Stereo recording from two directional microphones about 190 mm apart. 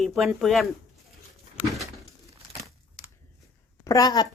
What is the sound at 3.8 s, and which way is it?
Speech, 20° left (ahead or behind).